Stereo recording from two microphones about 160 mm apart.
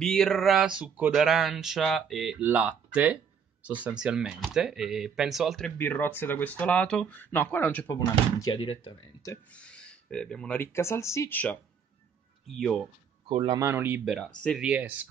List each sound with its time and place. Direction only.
0.0 s speech: 5° left (ahead or behind)
5.8 s speech: 10° left (ahead or behind)
8.5 s speech: 30° left (ahead or behind)
9.5 s speech: 5° left (ahead or behind)
12.4 s speech: centre (ahead or behind)
13.3 s speech: 35° right (ahead or behind)
13.6 s speech: 15° right (ahead or behind); by 14.6 s 5° left (ahead or behind)
14.6 s speech: 10° right (ahead or behind)